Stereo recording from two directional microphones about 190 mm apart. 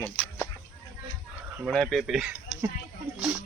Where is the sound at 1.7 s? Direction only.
Centre (ahead or behind).